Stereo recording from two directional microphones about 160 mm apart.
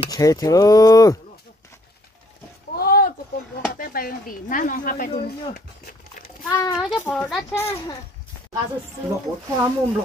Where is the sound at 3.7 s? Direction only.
65° left (ahead or behind).